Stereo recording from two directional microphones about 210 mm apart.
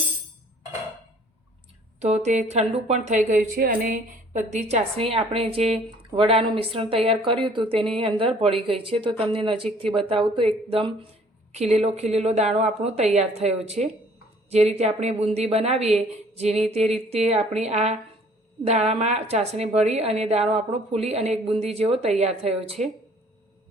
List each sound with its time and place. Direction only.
2.0 s a woman's voice: 30° right (ahead or behind)